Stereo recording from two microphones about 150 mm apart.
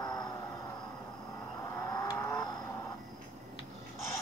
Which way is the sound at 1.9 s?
25° left (ahead or behind).